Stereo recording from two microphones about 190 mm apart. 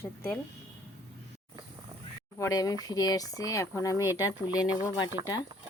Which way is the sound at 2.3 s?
15° left (ahead or behind).